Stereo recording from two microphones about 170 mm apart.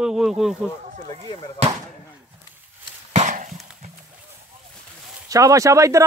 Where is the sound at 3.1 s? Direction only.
45° right (ahead or behind).